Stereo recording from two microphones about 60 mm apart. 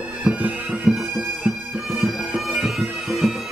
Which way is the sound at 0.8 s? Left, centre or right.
Centre.